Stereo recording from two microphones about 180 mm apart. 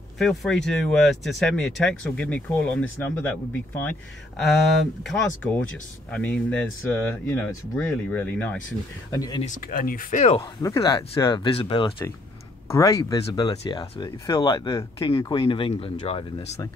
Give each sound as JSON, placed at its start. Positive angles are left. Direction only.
{"t": 0.2, "sound": "speech", "side_deg": 0}
{"t": 5.0, "sound": "speech", "side_deg": 10}
{"t": 9.1, "sound": "speech", "side_deg": 20}
{"t": 9.6, "sound": "speech", "side_deg": 50}
{"t": 10.3, "sound": "speech", "side_deg": 20}